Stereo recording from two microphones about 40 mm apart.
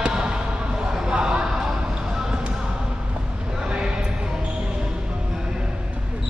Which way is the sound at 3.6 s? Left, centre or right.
Right.